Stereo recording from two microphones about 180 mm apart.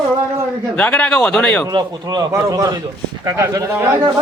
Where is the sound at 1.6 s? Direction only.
20° right (ahead or behind).